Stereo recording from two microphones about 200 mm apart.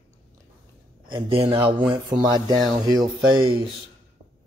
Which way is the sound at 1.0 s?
25° right (ahead or behind).